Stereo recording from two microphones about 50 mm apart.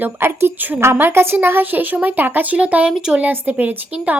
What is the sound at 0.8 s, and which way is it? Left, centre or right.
Speech, right.